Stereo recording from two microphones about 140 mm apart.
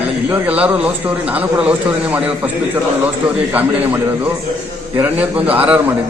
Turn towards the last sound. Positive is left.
turn(degrees=-10)  # may be behind; listen again after turning